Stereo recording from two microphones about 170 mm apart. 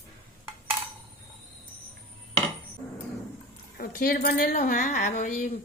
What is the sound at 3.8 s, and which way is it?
Speech, 60° left (ahead or behind).